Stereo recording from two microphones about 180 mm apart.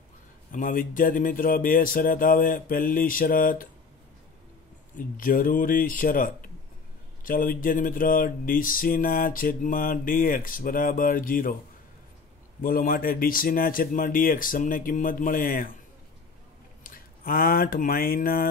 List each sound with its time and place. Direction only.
0.5 s speech: 50° left (ahead or behind)
4.9 s speech: 50° left (ahead or behind)
12.6 s speech: 55° left (ahead or behind)
16.8 s speech: 50° left (ahead or behind)